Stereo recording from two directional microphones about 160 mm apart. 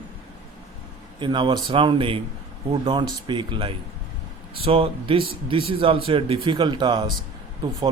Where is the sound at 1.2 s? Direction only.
30° right (ahead or behind).